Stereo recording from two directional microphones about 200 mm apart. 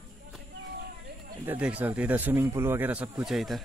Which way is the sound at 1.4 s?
10° right (ahead or behind).